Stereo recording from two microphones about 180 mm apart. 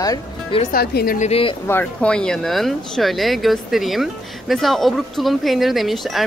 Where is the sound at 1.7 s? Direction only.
10° left (ahead or behind).